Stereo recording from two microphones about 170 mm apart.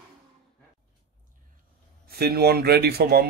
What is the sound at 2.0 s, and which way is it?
Speech, 65° right (ahead or behind).